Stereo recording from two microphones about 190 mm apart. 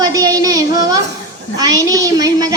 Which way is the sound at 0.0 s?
20° right (ahead or behind).